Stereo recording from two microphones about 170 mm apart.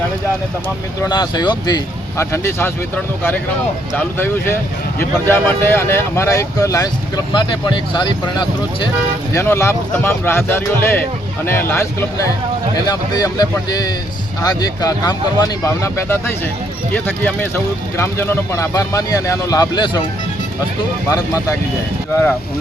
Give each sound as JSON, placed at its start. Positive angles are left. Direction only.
{"t": 1.0, "sound": "speech", "side_deg": 25}
{"t": 3.9, "sound": "speech", "side_deg": 10}
{"t": 9.3, "sound": "speech", "side_deg": 15}
{"t": 21.1, "sound": "speech", "side_deg": 20}